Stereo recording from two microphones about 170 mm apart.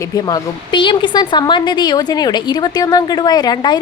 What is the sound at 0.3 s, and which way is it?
Speech, 25° left (ahead or behind).